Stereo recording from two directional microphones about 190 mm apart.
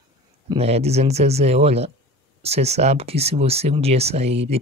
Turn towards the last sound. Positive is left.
turn(degrees=-35)  # may be behind; listen again after turning